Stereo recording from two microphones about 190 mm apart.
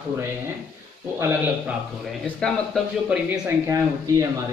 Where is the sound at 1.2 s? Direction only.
10° right (ahead or behind).